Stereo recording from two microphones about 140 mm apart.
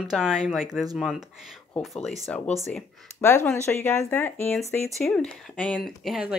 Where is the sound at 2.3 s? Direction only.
5° left (ahead or behind).